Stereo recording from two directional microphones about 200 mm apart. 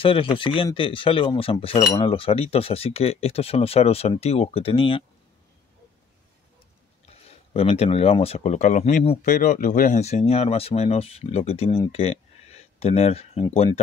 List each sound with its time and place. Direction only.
0.0 s speech: 25° left (ahead or behind)
7.1 s speech: 30° left (ahead or behind)